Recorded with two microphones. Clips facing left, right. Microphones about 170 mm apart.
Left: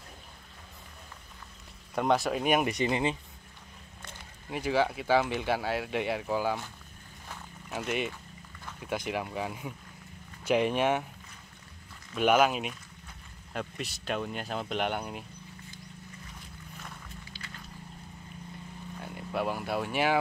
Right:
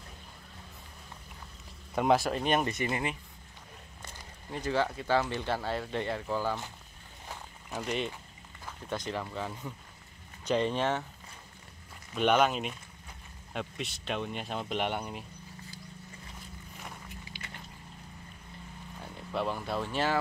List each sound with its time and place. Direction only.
2.0 s speech: centre (ahead or behind); by 3.2 s 25° left (ahead or behind)
4.5 s speech: 10° left (ahead or behind)
7.7 s speech: 5° left (ahead or behind)
12.2 s speech: 5° left (ahead or behind)
16.8 s boat: 15° right (ahead or behind)
19.0 s speech: 5° left (ahead or behind)